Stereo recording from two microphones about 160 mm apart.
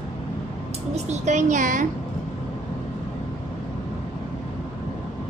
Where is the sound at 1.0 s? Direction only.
45° right (ahead or behind).